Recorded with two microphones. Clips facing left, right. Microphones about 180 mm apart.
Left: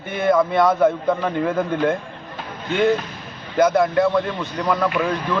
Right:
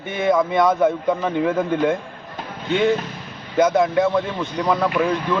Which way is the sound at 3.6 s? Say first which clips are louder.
Even; 20° right (ahead or behind).